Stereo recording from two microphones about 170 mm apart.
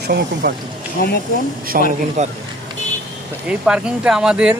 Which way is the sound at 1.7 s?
55° right (ahead or behind).